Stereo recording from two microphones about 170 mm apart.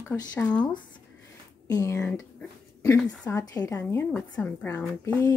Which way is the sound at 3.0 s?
20° left (ahead or behind).